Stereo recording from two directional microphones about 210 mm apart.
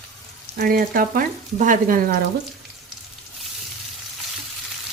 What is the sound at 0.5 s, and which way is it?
Frying, 45° right (ahead or behind).